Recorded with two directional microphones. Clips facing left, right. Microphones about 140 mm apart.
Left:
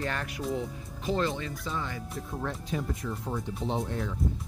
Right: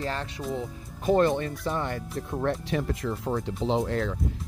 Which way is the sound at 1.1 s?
55° right (ahead or behind).